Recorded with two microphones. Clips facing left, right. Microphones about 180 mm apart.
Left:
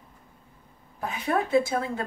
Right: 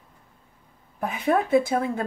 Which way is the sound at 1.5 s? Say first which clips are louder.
Right 3 dB; 55° right (ahead or behind).